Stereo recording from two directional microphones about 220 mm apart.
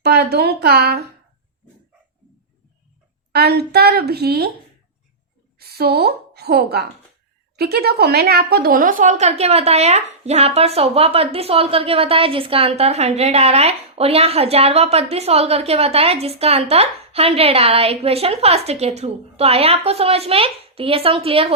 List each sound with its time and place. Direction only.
0.0 s a woman's voice: 45° right (ahead or behind)
3.3 s a woman's voice: 45° right (ahead or behind)
5.5 s a woman's voice: 45° right (ahead or behind); by 21.5 s 25° right (ahead or behind)